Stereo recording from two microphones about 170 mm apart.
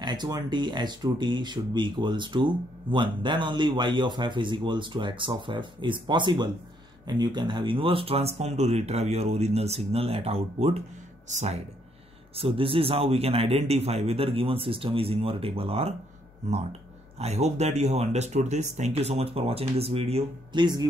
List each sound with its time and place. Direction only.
0.0 s speech: 25° right (ahead or behind); by 11.6 s 40° right (ahead or behind)
12.4 s speech: 30° right (ahead or behind)
17.2 s speech: 40° right (ahead or behind)